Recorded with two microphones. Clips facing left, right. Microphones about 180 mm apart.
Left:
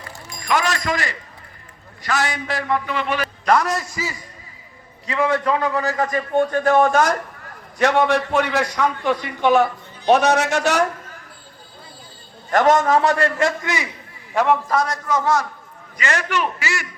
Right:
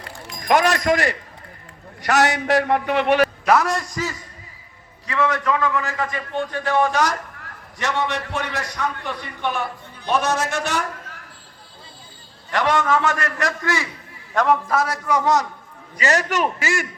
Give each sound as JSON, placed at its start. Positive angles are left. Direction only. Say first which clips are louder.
{"t": 0.3, "sound": "a man's voice", "louder": "right 4 dB", "side_deg": -60}
{"t": 3.4, "sound": "a man's voice", "louder": "even", "side_deg": -5}
{"t": 5.0, "sound": "a man's voice", "louder": "left 2 dB", "side_deg": 25}
{"t": 12.5, "sound": "a man's voice", "louder": "left 4 dB", "side_deg": 45}
{"t": 14.3, "sound": "a man's voice", "louder": "left 1 dB", "side_deg": 0}
{"t": 16.0, "sound": "a man's voice", "louder": "right 2 dB", "side_deg": -40}